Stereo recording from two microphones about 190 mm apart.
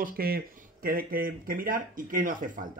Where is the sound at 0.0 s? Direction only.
50° right (ahead or behind).